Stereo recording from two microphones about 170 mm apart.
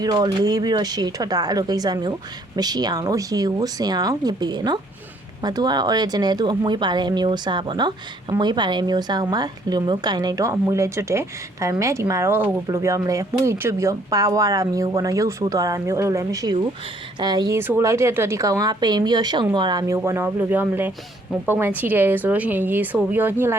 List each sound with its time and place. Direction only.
0.0 s speech: 25° right (ahead or behind)
20.1 s a woman's voice: 15° right (ahead or behind)